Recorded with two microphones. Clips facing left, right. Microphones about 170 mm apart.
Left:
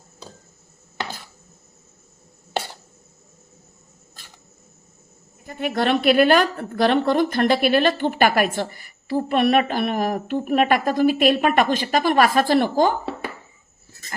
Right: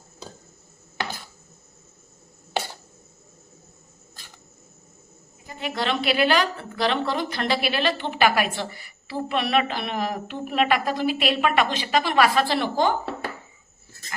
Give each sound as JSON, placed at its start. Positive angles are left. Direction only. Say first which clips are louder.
{"t": 5.5, "sound": "a woman's voice", "louder": "left 6 dB", "side_deg": 55}